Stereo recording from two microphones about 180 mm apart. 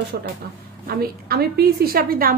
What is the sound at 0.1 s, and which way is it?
Speech, 75° right (ahead or behind).